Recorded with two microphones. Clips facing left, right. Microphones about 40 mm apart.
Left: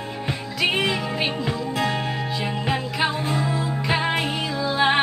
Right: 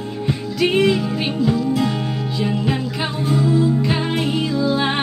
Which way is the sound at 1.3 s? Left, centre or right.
Left.